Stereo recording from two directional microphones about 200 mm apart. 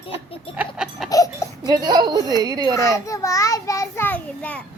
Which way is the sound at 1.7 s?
20° right (ahead or behind).